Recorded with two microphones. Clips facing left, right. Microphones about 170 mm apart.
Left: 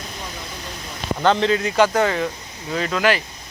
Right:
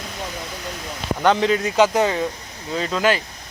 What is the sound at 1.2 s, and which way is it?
Speech, 10° right (ahead or behind).